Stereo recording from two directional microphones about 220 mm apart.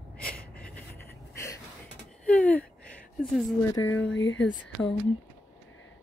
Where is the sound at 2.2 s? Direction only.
5° left (ahead or behind).